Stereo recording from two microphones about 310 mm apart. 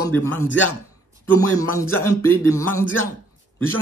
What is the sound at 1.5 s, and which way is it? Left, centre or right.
Speech, centre.